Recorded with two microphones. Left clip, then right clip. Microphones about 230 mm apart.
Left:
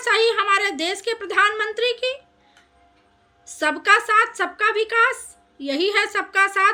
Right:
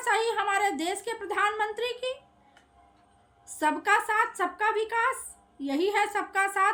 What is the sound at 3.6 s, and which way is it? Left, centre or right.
A woman's voice, centre.